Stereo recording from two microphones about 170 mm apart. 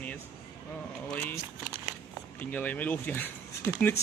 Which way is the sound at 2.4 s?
10° left (ahead or behind).